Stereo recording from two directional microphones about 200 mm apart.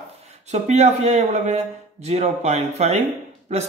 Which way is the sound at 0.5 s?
35° right (ahead or behind).